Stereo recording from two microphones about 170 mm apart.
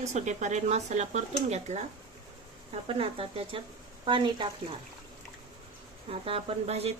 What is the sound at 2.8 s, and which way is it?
Speech, 35° right (ahead or behind).